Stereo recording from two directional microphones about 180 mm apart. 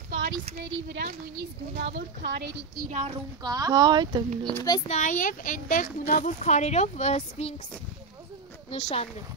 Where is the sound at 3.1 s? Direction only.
20° right (ahead or behind).